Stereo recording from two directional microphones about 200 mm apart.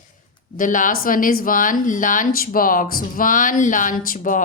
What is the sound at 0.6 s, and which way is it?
Speech, 40° left (ahead or behind).